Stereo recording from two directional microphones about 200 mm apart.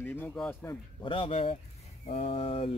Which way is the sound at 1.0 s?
25° left (ahead or behind).